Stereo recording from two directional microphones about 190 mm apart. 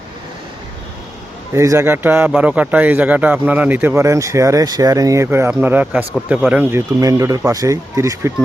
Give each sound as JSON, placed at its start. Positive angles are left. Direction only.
{"t": 1.5, "sound": "speech", "side_deg": -15}